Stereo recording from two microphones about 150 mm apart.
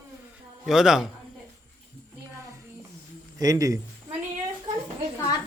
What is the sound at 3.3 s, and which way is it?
Speech, 25° right (ahead or behind).